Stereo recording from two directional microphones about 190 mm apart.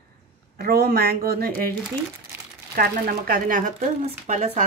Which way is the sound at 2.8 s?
50° right (ahead or behind).